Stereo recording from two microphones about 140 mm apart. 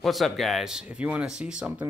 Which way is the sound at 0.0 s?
Centre (ahead or behind).